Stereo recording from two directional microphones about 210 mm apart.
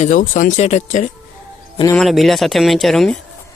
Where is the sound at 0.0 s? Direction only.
35° left (ahead or behind).